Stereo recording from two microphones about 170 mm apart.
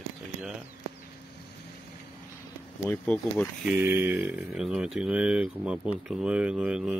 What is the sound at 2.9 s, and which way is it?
Speech, 5° left (ahead or behind).